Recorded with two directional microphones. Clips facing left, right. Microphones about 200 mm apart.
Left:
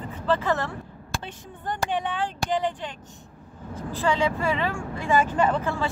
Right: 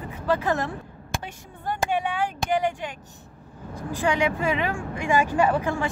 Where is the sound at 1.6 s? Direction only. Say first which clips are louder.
Right 2 dB; 10° right (ahead or behind).